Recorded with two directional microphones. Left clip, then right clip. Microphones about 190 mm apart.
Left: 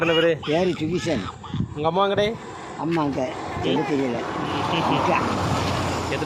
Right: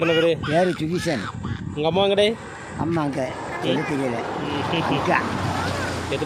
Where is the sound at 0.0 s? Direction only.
25° right (ahead or behind).